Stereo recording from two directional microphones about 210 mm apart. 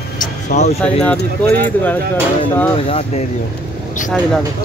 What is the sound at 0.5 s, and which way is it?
Speech, 35° left (ahead or behind).